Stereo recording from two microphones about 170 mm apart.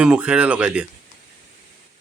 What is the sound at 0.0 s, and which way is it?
Speech, 5° right (ahead or behind).